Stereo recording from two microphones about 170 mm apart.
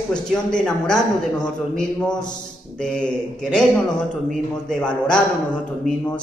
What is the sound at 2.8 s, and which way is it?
A man's voice, 5° left (ahead or behind).